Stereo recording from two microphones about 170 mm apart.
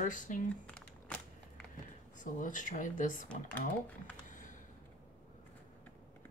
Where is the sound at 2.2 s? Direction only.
50° left (ahead or behind).